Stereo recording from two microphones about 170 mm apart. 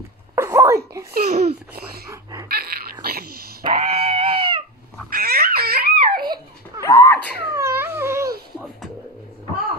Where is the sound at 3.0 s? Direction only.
65° right (ahead or behind).